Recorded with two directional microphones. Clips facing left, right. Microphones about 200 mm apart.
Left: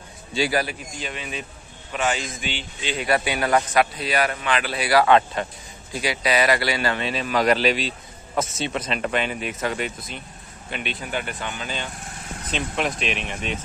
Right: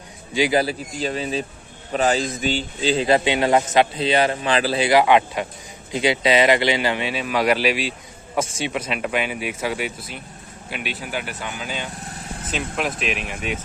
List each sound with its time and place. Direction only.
0.3 s a man's voice: 15° right (ahead or behind)
0.6 s a man's voice: 35° right (ahead or behind); by 5.9 s 10° right (ahead or behind)
5.9 s speech: 25° right (ahead or behind); by 13.6 s 5° right (ahead or behind)